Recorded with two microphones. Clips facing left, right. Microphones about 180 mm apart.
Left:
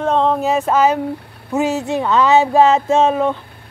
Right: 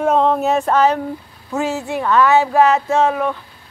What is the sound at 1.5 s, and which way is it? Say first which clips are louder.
Speech: left 3 dB; 20° left (ahead or behind).